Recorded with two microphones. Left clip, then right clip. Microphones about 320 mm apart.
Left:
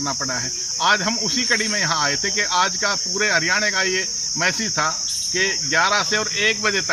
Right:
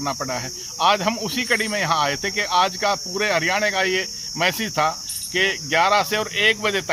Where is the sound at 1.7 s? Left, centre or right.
Centre.